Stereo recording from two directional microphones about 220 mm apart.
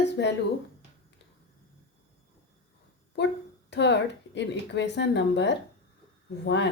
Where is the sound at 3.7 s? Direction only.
50° left (ahead or behind).